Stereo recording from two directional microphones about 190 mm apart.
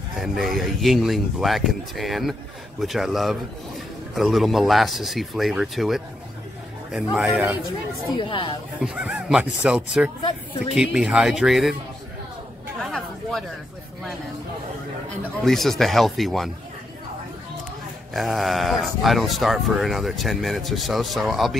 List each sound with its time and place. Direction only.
0.2 s speech: centre (ahead or behind)
8.1 s speech: 25° left (ahead or behind)
8.8 s speech: 5° right (ahead or behind)
12.8 s chatter: centre (ahead or behind)
15.4 s speech: centre (ahead or behind)
18.1 s speech: centre (ahead or behind)